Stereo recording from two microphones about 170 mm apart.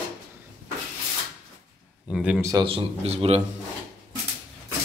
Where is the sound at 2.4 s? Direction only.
20° right (ahead or behind).